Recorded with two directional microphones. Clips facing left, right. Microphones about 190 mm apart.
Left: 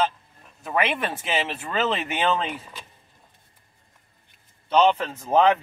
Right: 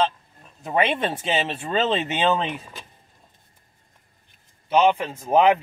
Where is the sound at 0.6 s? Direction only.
25° right (ahead or behind).